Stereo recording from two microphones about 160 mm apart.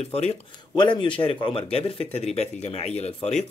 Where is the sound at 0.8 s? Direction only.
30° left (ahead or behind).